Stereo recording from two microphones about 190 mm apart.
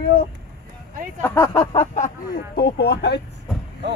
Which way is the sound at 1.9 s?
45° left (ahead or behind).